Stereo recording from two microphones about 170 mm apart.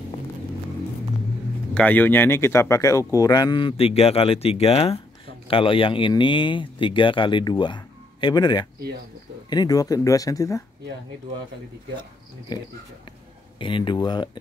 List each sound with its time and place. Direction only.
1.7 s speech: 10° left (ahead or behind)
13.6 s speech: 30° left (ahead or behind)